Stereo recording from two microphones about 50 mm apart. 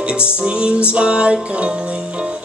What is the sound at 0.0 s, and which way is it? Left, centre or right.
Music, centre.